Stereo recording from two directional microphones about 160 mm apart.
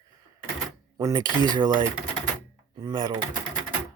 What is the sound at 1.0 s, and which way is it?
Speech, 25° right (ahead or behind).